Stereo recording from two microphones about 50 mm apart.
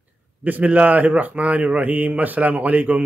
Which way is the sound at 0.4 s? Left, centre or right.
Right.